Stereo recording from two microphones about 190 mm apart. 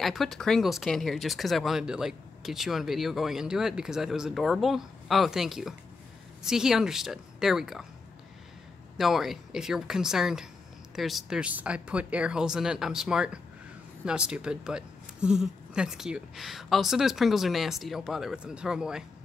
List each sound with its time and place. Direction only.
0.0 s speech: centre (ahead or behind)
8.9 s speech: centre (ahead or behind)